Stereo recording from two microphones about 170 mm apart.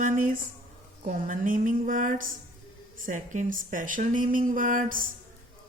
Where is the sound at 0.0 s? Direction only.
50° right (ahead or behind).